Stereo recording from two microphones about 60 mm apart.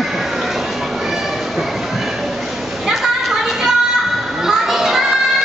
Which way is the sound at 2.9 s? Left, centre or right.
Centre.